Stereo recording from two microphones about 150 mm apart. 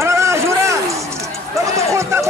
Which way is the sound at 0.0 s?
20° right (ahead or behind).